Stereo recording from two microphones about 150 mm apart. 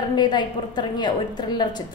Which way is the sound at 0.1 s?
30° left (ahead or behind).